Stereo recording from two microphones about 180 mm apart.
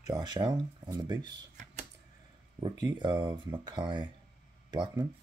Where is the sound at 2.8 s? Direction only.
25° right (ahead or behind).